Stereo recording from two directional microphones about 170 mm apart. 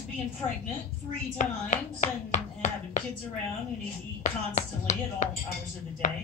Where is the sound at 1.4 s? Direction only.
45° left (ahead or behind).